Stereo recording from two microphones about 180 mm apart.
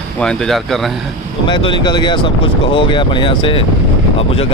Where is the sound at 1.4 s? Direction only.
25° left (ahead or behind).